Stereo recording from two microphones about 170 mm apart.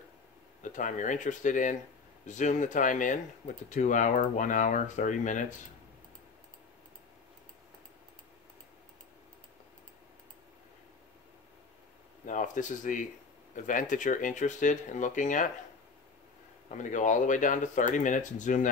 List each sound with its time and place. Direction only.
0.6 s speech: 50° left (ahead or behind)
12.3 s speech: 50° left (ahead or behind)
16.6 s speech: 45° left (ahead or behind)